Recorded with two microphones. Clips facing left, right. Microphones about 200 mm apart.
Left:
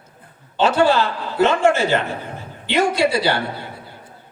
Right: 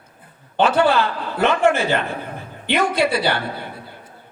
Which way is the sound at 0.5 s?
55° right (ahead or behind).